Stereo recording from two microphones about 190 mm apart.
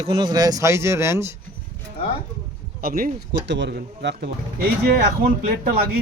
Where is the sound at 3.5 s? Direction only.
65° right (ahead or behind).